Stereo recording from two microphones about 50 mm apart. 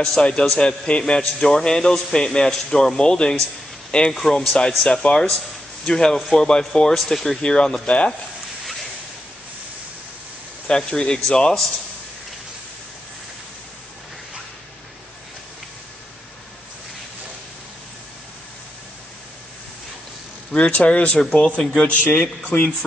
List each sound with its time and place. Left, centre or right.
0.0 s a man's voice: centre
10.7 s a man's voice: centre
20.5 s speech: left
21.2 s a man's voice: centre
21.8 s a man's voice: left